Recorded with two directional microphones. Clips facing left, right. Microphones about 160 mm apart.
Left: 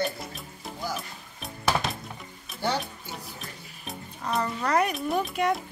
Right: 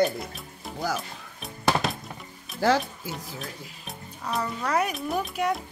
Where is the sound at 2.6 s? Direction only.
90° right.